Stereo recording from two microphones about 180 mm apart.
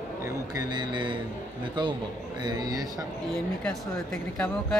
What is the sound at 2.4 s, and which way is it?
Speech, 20° right (ahead or behind).